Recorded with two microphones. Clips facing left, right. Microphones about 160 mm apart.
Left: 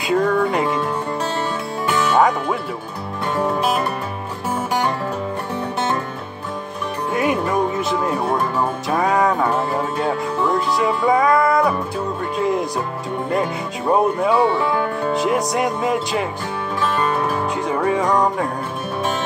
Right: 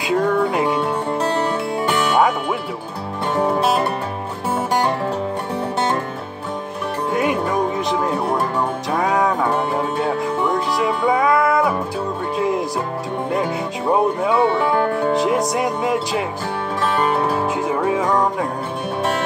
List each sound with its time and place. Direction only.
0.0 s speech: centre (ahead or behind)
3.3 s music: 20° right (ahead or behind)
3.6 s music: 35° right (ahead or behind)
7.1 s music: centre (ahead or behind)
13.3 s speech: centre (ahead or behind)
17.0 s music: 30° right (ahead or behind)
17.6 s speech: 5° right (ahead or behind)